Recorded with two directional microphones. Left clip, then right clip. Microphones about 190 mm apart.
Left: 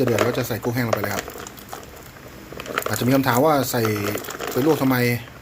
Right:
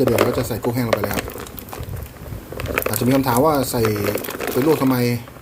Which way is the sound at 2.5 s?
30° right (ahead or behind).